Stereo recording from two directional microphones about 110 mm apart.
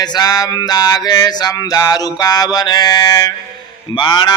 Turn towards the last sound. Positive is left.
turn(degrees=45)  # may be behind; listen again after turning